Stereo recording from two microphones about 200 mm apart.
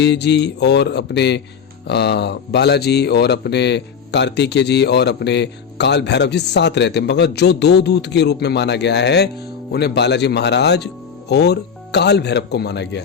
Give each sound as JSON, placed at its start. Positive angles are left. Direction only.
{"t": 0.0, "sound": "speech", "side_deg": 60}